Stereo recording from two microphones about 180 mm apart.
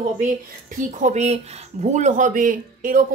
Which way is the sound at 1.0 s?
40° right (ahead or behind).